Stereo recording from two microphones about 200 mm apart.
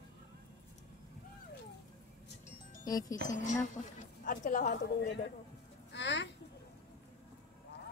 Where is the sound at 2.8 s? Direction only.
20° left (ahead or behind).